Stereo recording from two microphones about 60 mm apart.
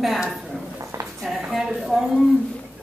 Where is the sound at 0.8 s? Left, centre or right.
Right.